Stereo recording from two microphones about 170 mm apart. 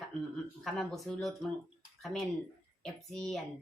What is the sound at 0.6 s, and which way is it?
Speech, centre (ahead or behind).